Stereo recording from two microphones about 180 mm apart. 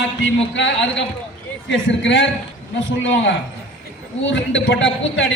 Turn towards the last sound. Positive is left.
turn(degrees=75)  # may be behind; listen again after turning